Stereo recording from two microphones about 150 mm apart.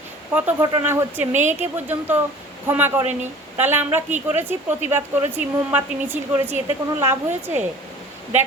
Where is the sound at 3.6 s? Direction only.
15° right (ahead or behind).